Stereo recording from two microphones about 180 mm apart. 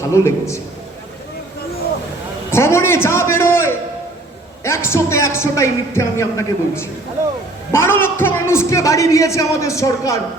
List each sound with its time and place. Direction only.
0.1 s a man's voice: 15° left (ahead or behind)
2.5 s a man's voice: 15° left (ahead or behind)